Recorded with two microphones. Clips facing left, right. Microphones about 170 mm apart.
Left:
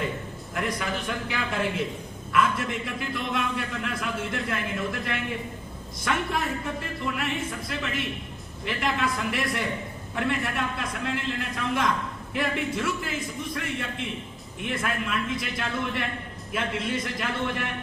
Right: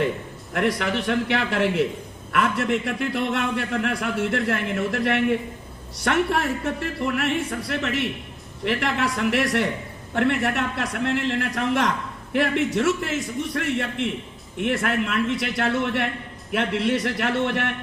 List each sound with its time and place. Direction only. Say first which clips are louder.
0.5 s a man's voice: right 7 dB; 70° right (ahead or behind)